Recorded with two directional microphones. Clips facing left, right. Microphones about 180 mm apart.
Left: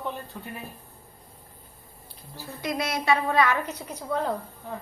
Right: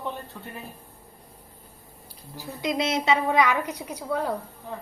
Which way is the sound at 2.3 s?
15° right (ahead or behind).